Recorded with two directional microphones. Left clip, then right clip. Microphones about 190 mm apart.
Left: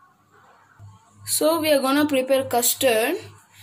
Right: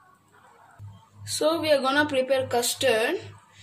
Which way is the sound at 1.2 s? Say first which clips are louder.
Left 4 dB; 45° left (ahead or behind).